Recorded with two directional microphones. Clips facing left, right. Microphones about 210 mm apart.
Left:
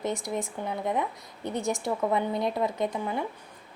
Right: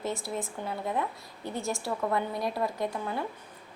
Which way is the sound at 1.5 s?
20° left (ahead or behind).